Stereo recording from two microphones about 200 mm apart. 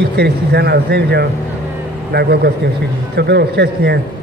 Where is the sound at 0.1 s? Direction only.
55° right (ahead or behind).